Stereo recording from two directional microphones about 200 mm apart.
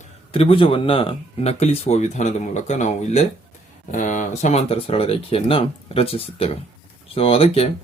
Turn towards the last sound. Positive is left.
turn(degrees=30)  # may be behind; listen again after turning